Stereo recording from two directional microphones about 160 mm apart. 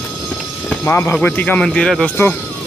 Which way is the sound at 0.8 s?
15° left (ahead or behind).